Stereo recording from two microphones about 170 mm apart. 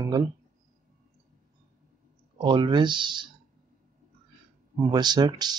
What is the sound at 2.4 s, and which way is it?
Speech, 25° right (ahead or behind).